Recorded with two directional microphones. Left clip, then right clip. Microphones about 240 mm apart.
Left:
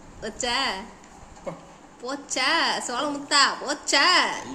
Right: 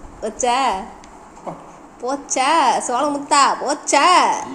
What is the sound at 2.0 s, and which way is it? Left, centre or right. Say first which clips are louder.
A woman's voice: right 7 dB; centre.